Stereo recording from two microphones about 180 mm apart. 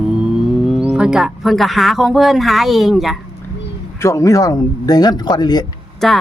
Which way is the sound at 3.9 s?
15° left (ahead or behind).